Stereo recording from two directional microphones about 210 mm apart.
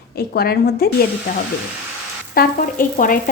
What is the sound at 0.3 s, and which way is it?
Speech, 45° left (ahead or behind).